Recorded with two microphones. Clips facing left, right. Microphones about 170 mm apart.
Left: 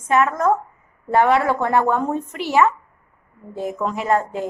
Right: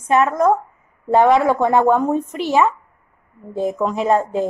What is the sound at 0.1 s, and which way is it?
A woman's voice, 20° right (ahead or behind).